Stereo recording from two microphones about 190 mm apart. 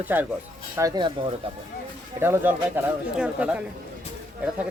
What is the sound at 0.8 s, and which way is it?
Speech, 20° right (ahead or behind).